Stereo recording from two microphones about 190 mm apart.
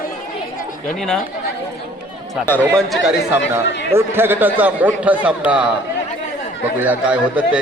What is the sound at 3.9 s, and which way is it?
Speech, 10° right (ahead or behind).